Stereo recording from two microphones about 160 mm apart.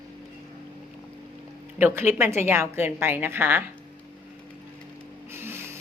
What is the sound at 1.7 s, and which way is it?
A woman's voice, 15° right (ahead or behind).